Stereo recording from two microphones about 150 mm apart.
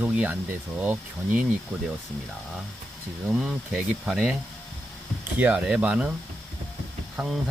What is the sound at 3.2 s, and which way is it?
Speech, 5° right (ahead or behind).